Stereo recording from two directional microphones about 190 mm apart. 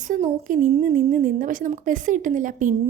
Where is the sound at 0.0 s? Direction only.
40° right (ahead or behind).